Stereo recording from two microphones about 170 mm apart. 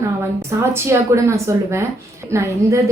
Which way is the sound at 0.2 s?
15° right (ahead or behind).